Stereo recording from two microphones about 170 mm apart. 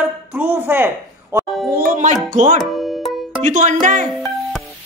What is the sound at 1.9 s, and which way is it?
Music, 45° right (ahead or behind).